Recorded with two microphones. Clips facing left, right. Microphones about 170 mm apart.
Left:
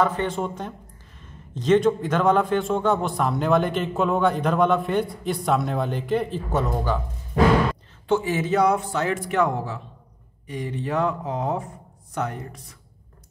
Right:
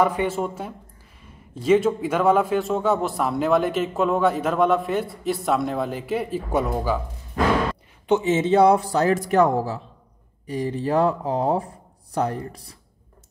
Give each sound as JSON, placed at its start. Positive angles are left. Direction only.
{"t": 0.0, "sound": "a man's voice", "side_deg": -10}
{"t": 8.1, "sound": "speech", "side_deg": -20}